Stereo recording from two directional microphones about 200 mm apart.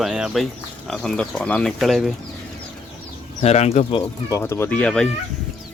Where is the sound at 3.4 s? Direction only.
30° left (ahead or behind).